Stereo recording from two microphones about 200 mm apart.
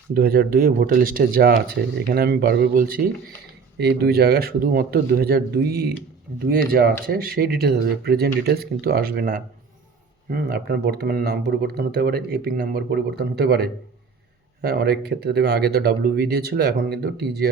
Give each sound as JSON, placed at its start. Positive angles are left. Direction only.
{"t": 0.1, "sound": "speech", "side_deg": -50}